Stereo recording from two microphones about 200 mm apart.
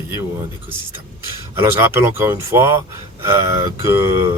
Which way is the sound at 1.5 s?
10° right (ahead or behind).